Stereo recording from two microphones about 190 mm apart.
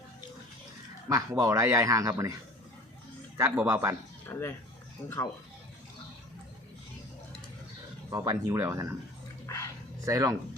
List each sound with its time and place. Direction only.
1.1 s speech: 20° right (ahead or behind)
3.3 s speech: 10° right (ahead or behind)
4.3 s speech: 10° left (ahead or behind)
8.1 s speech: 20° right (ahead or behind)
10.1 s speech: 15° right (ahead or behind)